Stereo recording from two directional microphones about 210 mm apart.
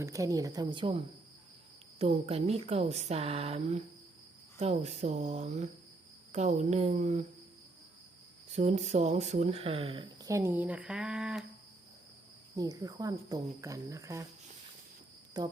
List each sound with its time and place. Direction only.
0.0 s speech: 15° right (ahead or behind); by 7.3 s 35° right (ahead or behind)
8.5 s speech: 35° right (ahead or behind); by 11.4 s 5° right (ahead or behind)
12.5 s speech: 15° right (ahead or behind)
15.3 s speech: 20° right (ahead or behind)